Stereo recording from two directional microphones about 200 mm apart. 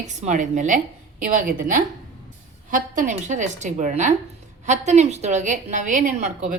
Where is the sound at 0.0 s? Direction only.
35° right (ahead or behind).